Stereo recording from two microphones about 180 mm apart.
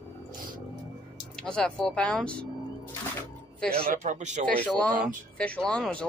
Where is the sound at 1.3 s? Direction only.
5° left (ahead or behind).